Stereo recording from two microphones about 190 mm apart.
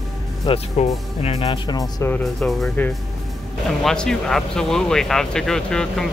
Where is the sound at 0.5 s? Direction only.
25° left (ahead or behind).